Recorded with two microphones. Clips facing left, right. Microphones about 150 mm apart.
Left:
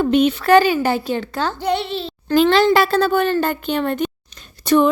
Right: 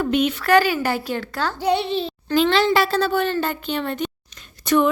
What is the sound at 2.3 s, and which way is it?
Speech, 45° left (ahead or behind).